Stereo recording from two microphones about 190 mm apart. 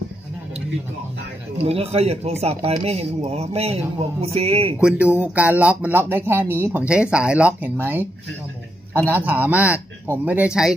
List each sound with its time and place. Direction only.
1.6 s speech: 30° right (ahead or behind)
4.7 s speech: 5° right (ahead or behind)
9.1 s speech: 10° right (ahead or behind)